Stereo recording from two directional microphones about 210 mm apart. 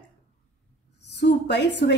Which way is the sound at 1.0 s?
55° left (ahead or behind).